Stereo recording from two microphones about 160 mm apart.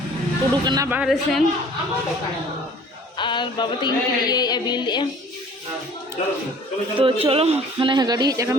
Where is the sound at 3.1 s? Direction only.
30° left (ahead or behind).